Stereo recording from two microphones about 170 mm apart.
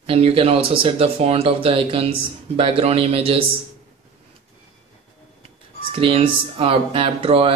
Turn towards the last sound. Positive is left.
turn(degrees=-35)  # may be behind; listen again after turning